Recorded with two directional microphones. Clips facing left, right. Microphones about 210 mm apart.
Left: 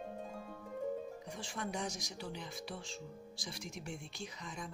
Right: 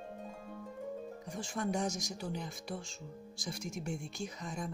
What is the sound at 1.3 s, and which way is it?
Speech, 45° right (ahead or behind).